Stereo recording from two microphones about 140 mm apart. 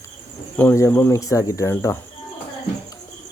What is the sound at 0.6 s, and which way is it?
Speech, 15° left (ahead or behind).